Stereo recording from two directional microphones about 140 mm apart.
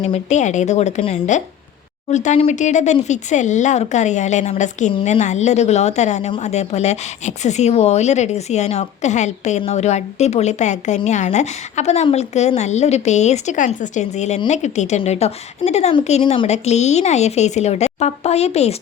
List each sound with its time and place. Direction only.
0.0 s a woman's voice: 50° left (ahead or behind)
16.5 s speech: 55° left (ahead or behind)